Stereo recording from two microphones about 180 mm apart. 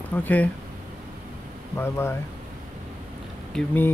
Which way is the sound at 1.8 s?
15° left (ahead or behind).